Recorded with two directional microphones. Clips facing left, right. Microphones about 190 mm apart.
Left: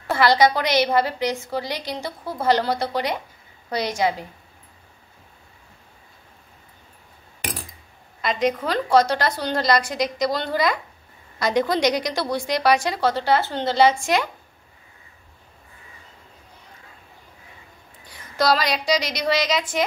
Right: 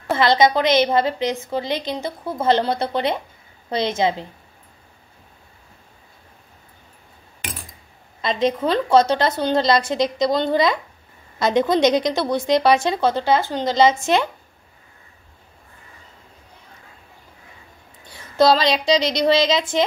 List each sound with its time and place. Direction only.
0.1 s a woman's voice: 20° right (ahead or behind)
8.2 s a woman's voice: 25° right (ahead or behind)
18.1 s a woman's voice: 25° right (ahead or behind)